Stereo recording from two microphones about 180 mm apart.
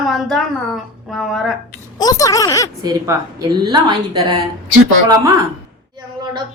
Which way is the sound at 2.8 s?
20° right (ahead or behind).